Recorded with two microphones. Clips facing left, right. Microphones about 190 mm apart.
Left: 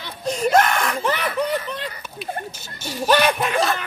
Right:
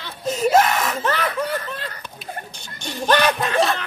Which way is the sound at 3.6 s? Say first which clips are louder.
Right 2 dB; centre (ahead or behind).